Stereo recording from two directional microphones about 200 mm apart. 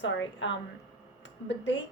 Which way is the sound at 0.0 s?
65° left (ahead or behind).